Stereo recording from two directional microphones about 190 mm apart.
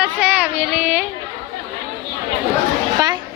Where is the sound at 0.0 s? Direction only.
5° right (ahead or behind).